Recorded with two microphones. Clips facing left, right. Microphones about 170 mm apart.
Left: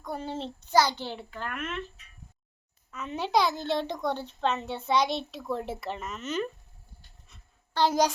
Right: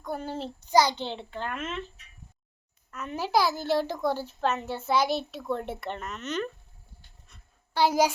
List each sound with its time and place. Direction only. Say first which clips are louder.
0.0 s a child's voice: right 1 dB; centre (ahead or behind)
0.6 s a child's voice: right 2 dB; 15° right (ahead or behind)
2.9 s a child's voice: even; 5° right (ahead or behind)
7.7 s a child's voice: right 1 dB; 10° right (ahead or behind)